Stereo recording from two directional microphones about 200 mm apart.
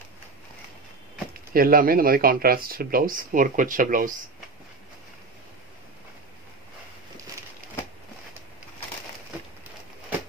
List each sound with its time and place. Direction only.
1.5 s speech: 45° right (ahead or behind)